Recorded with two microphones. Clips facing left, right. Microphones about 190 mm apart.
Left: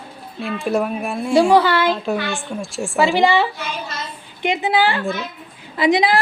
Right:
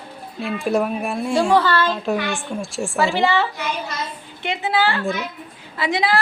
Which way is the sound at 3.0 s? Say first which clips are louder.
Left 3 dB; 15° left (ahead or behind).